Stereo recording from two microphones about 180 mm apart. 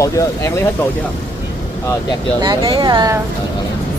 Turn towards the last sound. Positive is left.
turn(degrees=-20)  # may be behind; listen again after turning